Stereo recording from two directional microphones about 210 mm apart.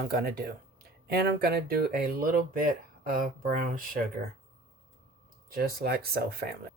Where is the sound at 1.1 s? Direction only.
50° right (ahead or behind).